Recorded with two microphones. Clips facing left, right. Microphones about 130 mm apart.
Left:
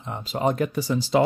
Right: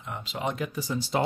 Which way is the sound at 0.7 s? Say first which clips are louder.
Left 6 dB; 75° left (ahead or behind).